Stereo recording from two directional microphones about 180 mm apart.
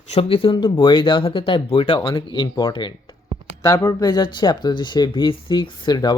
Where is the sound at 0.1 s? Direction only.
30° left (ahead or behind).